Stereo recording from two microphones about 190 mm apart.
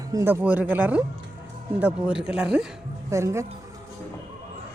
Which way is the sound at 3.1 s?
15° right (ahead or behind).